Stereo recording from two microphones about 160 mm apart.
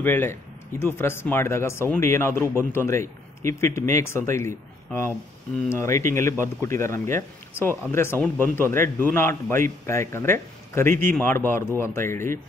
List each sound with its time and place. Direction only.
0.0 s speech: 10° left (ahead or behind)